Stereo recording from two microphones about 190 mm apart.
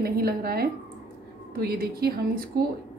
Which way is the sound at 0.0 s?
55° right (ahead or behind).